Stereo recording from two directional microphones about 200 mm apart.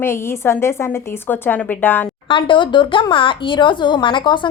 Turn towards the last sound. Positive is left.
turn(degrees=25)  # may be behind; listen again after turning